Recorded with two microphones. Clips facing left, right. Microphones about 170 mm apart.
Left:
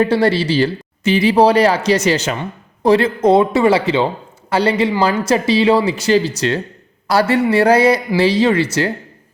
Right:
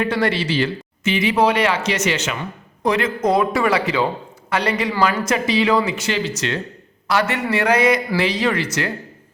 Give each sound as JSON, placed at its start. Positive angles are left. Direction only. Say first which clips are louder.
{"t": 0.0, "sound": "speech", "louder": "left 6 dB", "side_deg": 30}